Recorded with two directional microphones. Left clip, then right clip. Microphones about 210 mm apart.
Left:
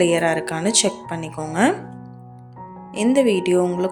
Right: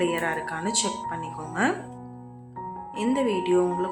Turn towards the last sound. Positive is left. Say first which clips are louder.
# left 4 dB
turn(degrees=35)  # may be behind; listen again after turning